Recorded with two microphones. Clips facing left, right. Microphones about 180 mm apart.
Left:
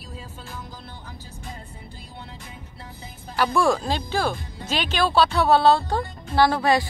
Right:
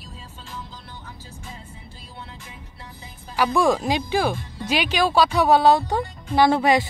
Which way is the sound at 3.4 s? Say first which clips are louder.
Right 1 dB; 15° right (ahead or behind).